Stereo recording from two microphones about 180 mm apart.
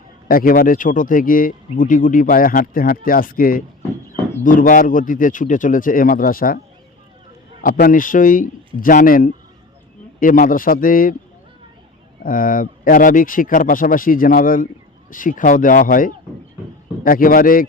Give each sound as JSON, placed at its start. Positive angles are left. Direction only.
{"t": 0.3, "sound": "speech", "side_deg": 50}
{"t": 7.6, "sound": "speech", "side_deg": 55}
{"t": 12.2, "sound": "speech", "side_deg": 50}